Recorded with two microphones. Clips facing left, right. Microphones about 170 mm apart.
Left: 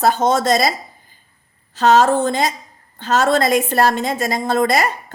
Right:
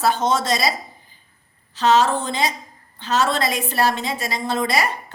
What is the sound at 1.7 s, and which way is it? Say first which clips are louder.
A woman's voice: left 4 dB; 50° left (ahead or behind).